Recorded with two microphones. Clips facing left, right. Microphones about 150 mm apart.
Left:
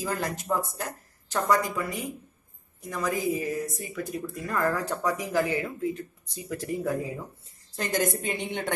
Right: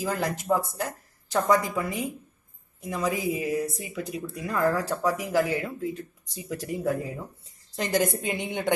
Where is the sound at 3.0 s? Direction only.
15° right (ahead or behind).